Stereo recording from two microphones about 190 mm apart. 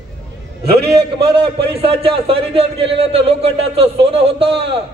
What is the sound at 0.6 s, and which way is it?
Speech, 55° right (ahead or behind).